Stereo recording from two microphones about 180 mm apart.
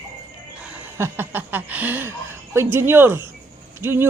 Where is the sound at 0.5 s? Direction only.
5° right (ahead or behind).